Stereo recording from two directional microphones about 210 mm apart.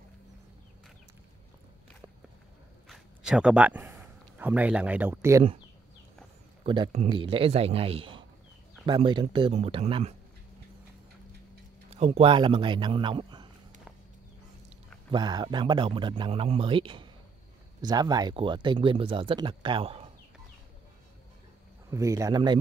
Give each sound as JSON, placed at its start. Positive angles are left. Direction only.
{"t": 2.9, "sound": "speech", "side_deg": -5}
{"t": 6.6, "sound": "speech", "side_deg": -25}
{"t": 11.9, "sound": "speech", "side_deg": -30}
{"t": 15.0, "sound": "speech", "side_deg": -20}
{"t": 21.9, "sound": "speech", "side_deg": -15}